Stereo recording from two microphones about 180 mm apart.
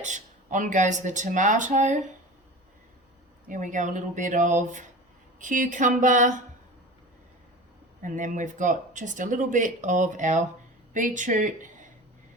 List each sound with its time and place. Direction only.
0.0 s speech: 45° right (ahead or behind)
3.4 s speech: 45° right (ahead or behind)
8.0 s speech: 45° right (ahead or behind)